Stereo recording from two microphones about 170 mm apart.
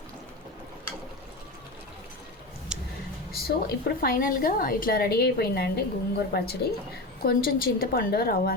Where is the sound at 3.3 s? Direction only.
65° left (ahead or behind).